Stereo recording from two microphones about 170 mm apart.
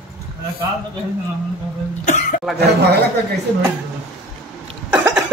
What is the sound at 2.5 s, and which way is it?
Speech, 75° right (ahead or behind).